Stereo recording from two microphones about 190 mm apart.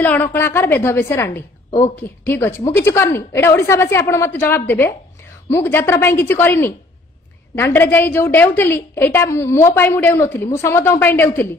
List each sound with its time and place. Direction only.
0.0 s a woman's voice: 10° left (ahead or behind)